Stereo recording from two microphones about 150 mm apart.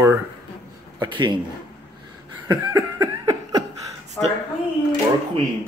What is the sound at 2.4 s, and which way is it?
Laughter, 20° right (ahead or behind).